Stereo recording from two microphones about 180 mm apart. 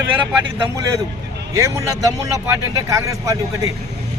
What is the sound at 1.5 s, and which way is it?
Speech, 15° right (ahead or behind).